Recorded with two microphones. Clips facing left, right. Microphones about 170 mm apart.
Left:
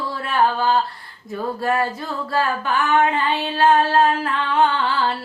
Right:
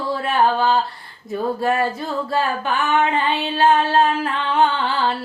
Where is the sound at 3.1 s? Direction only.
25° right (ahead or behind).